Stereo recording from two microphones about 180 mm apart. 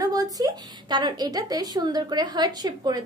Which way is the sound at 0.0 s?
20° right (ahead or behind).